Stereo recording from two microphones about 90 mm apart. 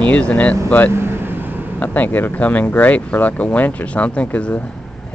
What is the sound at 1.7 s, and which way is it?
Speech, 20° left (ahead or behind).